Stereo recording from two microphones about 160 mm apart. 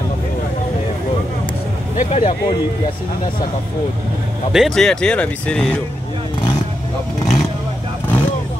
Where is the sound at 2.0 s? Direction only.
50° left (ahead or behind).